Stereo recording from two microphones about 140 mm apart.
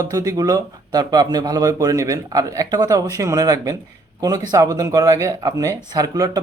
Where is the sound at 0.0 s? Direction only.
25° right (ahead or behind).